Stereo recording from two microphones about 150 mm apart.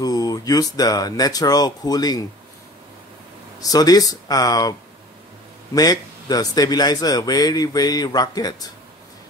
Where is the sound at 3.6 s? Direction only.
25° left (ahead or behind).